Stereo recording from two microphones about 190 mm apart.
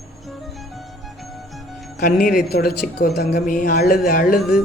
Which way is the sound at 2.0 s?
45° left (ahead or behind).